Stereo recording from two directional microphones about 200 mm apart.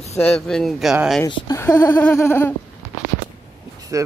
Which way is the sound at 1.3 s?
15° left (ahead or behind).